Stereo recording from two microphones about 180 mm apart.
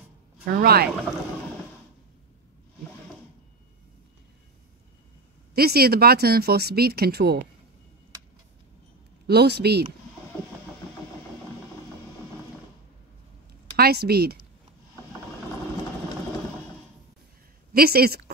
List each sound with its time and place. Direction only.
0.5 s speech: 55° right (ahead or behind)
5.5 s speech: 60° right (ahead or behind)
9.3 s speech: 65° right (ahead or behind)
13.7 s speech: 60° right (ahead or behind)
17.7 s speech: 60° right (ahead or behind)